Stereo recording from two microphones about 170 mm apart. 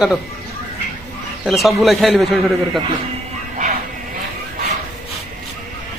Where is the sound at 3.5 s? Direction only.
45° right (ahead or behind).